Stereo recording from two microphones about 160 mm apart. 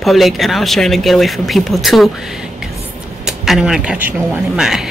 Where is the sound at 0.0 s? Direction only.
Centre (ahead or behind).